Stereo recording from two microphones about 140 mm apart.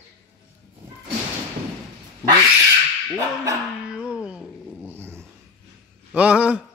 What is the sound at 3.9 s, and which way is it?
Music, 5° right (ahead or behind).